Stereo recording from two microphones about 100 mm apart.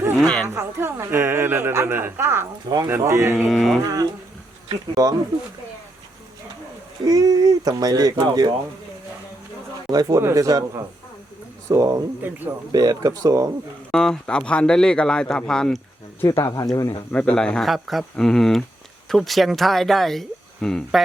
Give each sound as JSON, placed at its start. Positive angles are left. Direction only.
{"t": 0.2, "sound": "a sound", "side_deg": 10}
{"t": 0.4, "sound": "speech", "side_deg": -25}
{"t": 3.5, "sound": "speech", "side_deg": 0}
{"t": 3.8, "sound": "speech", "side_deg": -35}
{"t": 7.0, "sound": "speech", "side_deg": -40}
{"t": 9.9, "sound": "speech", "side_deg": -35}
{"t": 11.7, "sound": "speech", "side_deg": -35}
{"t": 13.9, "sound": "speech", "side_deg": 5}
{"t": 16.2, "sound": "speech", "side_deg": 35}
{"t": 17.1, "sound": "speech", "side_deg": 15}